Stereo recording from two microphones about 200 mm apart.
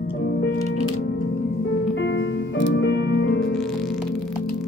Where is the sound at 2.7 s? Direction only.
60° left (ahead or behind).